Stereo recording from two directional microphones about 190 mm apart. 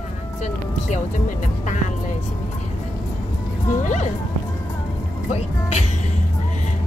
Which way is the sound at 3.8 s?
40° left (ahead or behind).